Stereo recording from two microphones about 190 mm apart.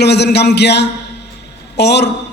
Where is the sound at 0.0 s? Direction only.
60° left (ahead or behind).